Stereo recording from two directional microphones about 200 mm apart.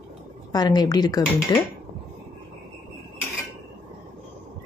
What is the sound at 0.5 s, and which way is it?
Speech, 20° left (ahead or behind).